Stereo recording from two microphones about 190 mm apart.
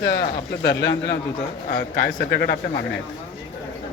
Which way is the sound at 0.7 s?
60° left (ahead or behind).